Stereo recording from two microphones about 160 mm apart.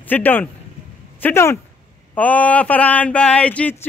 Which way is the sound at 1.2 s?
15° left (ahead or behind).